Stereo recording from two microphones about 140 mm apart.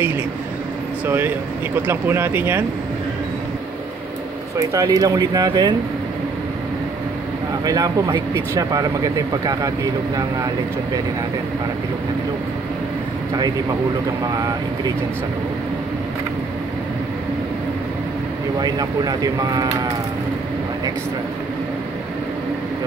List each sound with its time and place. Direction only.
1.0 s speech: 15° right (ahead or behind)
4.6 s speech: 25° right (ahead or behind)
7.6 s speech: 25° right (ahead or behind)
18.6 s speech: 25° right (ahead or behind)